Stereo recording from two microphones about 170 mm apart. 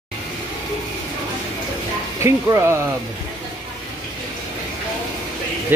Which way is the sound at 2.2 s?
15° right (ahead or behind).